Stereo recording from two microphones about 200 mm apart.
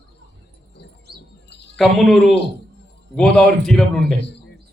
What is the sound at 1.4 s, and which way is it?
Bird, 60° left (ahead or behind).